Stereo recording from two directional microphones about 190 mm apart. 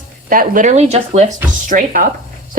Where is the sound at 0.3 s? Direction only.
45° right (ahead or behind).